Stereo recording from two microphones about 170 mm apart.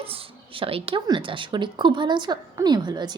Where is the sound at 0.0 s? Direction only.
35° right (ahead or behind).